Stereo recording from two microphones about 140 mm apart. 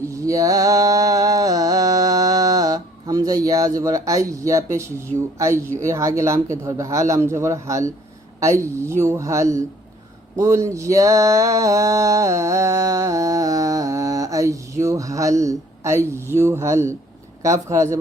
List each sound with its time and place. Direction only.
0.1 s mantra: 25° right (ahead or behind)
3.8 s speech: 25° right (ahead or behind)
10.3 s a sound: 20° right (ahead or behind)
17.4 s speech: 20° right (ahead or behind)